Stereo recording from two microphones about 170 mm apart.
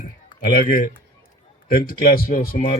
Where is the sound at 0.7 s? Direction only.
55° left (ahead or behind).